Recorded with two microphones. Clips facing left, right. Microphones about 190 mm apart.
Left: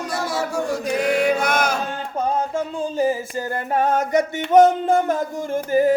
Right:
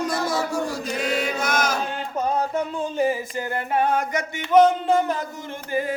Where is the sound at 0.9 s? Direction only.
60° left (ahead or behind).